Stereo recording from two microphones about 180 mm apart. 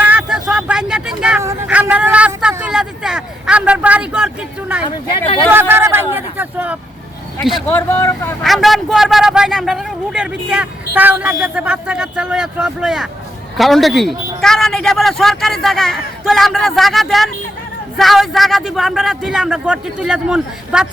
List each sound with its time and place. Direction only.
0.0 s vehicle: 5° right (ahead or behind)
1.6 s a sound: 5° right (ahead or behind)
5.0 s speech: 30° left (ahead or behind)
5.5 s a sound: 10° right (ahead or behind)
7.7 s speech: 15° left (ahead or behind)
8.4 s a man's voice: centre (ahead or behind)